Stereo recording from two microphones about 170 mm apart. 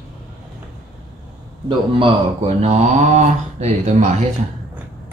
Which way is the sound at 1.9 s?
40° right (ahead or behind).